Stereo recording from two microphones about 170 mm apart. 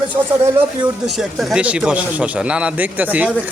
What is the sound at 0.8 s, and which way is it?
Speech, centre (ahead or behind).